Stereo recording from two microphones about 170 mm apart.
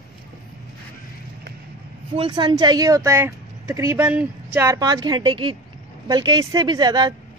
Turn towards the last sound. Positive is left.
turn(degrees=-25)  # may be behind; listen again after turning